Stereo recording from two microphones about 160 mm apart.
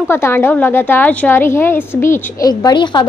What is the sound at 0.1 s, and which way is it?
A woman's voice, 15° left (ahead or behind).